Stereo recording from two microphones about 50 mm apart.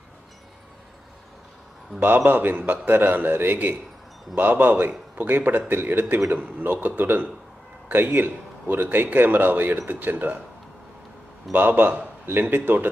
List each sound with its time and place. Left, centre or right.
2.0 s a man's voice: right
11.5 s a man's voice: right